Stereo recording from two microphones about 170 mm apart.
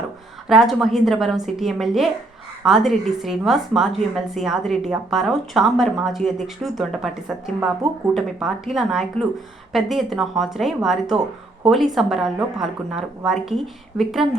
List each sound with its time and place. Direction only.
0.4 s a woman's voice: centre (ahead or behind)